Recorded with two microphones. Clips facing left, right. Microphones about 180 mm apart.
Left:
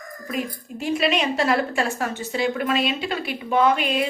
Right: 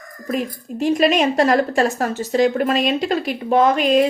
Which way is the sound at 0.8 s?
45° right (ahead or behind).